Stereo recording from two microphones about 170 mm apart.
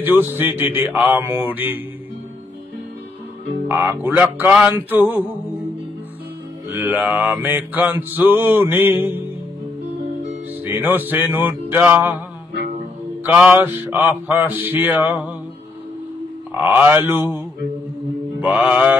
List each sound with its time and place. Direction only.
0.2 s music: 15° right (ahead or behind)
3.6 s music: 10° right (ahead or behind)
6.7 s music: 10° right (ahead or behind)
10.6 s music: 10° right (ahead or behind)
13.2 s mantra: 10° right (ahead or behind)
13.7 s music: 10° right (ahead or behind)
16.6 s music: 10° right (ahead or behind)
17.1 s mantra: 25° left (ahead or behind)
18.4 s music: 5° right (ahead or behind)